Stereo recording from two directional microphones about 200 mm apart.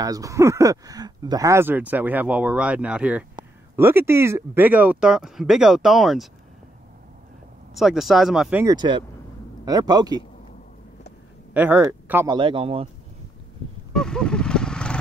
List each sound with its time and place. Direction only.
0.0 s speech: 15° right (ahead or behind); by 6.2 s centre (ahead or behind)
7.7 s speech: centre (ahead or behind)
8.7 s a man's voice: 25° right (ahead or behind)
11.5 s speech: 10° right (ahead or behind)
12.4 s a man's voice: 25° right (ahead or behind)
13.9 s vehicle: 5° left (ahead or behind)